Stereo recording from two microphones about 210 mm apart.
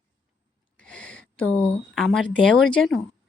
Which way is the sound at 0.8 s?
5° left (ahead or behind).